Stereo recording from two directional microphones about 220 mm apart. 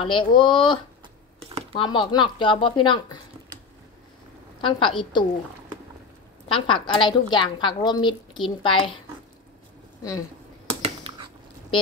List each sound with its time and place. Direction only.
0.0 s a woman's voice: 20° left (ahead or behind)
4.6 s a woman's voice: 20° left (ahead or behind)
6.5 s a woman's voice: 20° left (ahead or behind)
10.8 s a sound: 25° right (ahead or behind)